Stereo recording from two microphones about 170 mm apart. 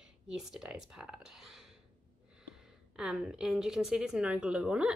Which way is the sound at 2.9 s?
5° right (ahead or behind).